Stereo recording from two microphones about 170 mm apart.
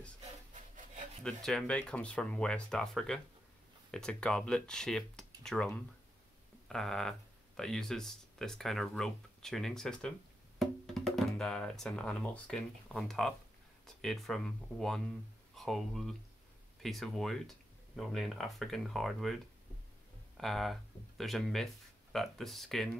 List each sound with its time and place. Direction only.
1.2 s speech: 5° left (ahead or behind)
6.7 s speech: 5° left (ahead or behind)
20.3 s speech: centre (ahead or behind)